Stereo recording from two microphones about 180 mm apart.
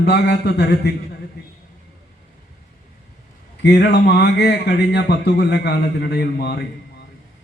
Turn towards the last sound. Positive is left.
turn(degrees=65)  # may be behind; listen again after turning